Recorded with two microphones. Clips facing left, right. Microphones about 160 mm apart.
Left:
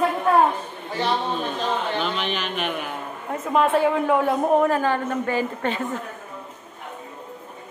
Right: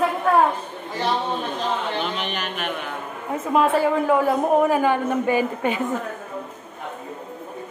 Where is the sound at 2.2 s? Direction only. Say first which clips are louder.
Left 1 dB; 55° right (ahead or behind).